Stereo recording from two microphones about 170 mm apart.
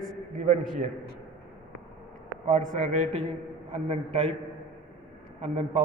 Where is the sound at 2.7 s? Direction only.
40° right (ahead or behind).